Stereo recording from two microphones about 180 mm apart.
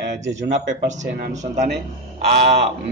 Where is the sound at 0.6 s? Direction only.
85° right.